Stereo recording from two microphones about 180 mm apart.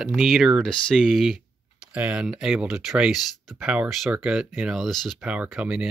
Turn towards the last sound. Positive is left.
turn(degrees=-5)  # may be behind; listen again after turning